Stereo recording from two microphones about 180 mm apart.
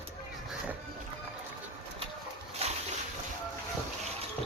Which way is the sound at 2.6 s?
35° right (ahead or behind).